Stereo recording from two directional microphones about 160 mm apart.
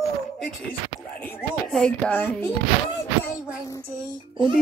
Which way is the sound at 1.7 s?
5° left (ahead or behind).